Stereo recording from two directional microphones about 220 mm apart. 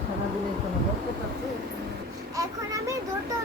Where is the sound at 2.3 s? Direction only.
15° right (ahead or behind).